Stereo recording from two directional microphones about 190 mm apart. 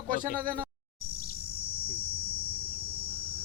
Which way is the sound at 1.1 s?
50° left (ahead or behind).